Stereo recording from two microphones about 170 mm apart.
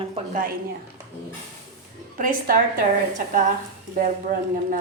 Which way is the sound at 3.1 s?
50° right (ahead or behind).